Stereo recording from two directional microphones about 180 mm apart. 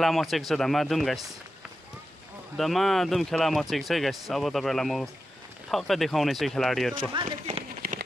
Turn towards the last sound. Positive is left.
turn(degrees=-55)  # may be behind; listen again after turning